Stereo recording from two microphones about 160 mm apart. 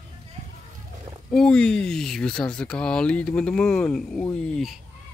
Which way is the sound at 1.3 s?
5° left (ahead or behind).